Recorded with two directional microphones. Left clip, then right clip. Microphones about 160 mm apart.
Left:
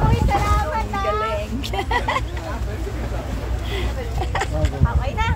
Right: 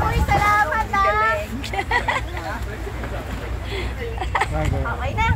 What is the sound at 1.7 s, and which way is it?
Vehicle, 25° left (ahead or behind).